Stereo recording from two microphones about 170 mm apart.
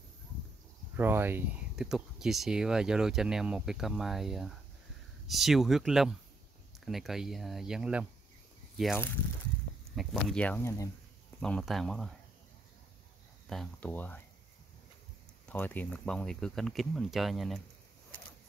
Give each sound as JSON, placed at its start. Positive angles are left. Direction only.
{"t": 0.9, "sound": "speech", "side_deg": -15}
{"t": 11.4, "sound": "speech", "side_deg": 5}
{"t": 13.5, "sound": "speech", "side_deg": 5}
{"t": 15.4, "sound": "speech", "side_deg": 10}